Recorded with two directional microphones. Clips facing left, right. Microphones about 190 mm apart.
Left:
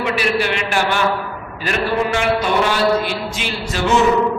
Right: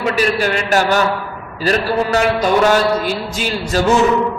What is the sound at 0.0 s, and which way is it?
A man's voice, 40° right (ahead or behind).